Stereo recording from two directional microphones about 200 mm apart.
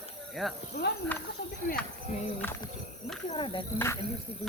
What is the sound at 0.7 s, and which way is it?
Speech, 55° left (ahead or behind).